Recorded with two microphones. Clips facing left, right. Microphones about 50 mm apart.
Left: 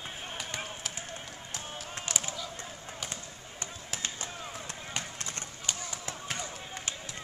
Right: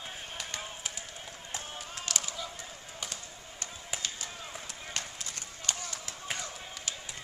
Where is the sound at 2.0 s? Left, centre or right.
Left.